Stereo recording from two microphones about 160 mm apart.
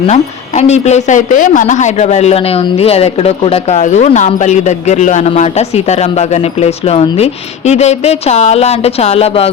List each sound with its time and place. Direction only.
0.1 s a woman's voice: 45° left (ahead or behind)